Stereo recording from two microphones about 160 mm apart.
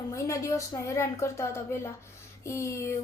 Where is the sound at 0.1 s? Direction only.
20° left (ahead or behind).